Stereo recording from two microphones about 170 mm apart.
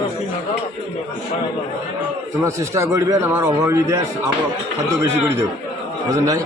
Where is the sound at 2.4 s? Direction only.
15° right (ahead or behind).